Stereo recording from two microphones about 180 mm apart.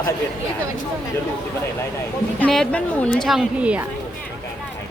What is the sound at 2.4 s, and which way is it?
A woman's voice, 5° left (ahead or behind).